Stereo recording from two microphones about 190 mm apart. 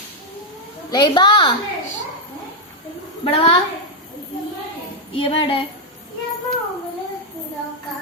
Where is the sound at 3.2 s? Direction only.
30° left (ahead or behind).